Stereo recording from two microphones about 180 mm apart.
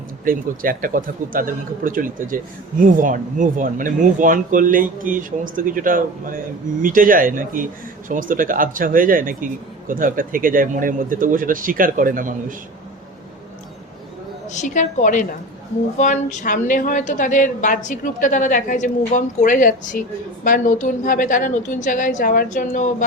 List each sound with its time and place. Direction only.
0.3 s speech: 50° right (ahead or behind)
14.5 s a woman's voice: 40° left (ahead or behind)